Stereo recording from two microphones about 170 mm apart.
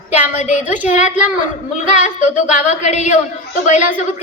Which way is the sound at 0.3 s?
45° left (ahead or behind).